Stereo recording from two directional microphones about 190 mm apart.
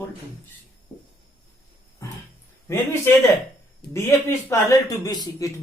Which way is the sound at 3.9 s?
15° left (ahead or behind).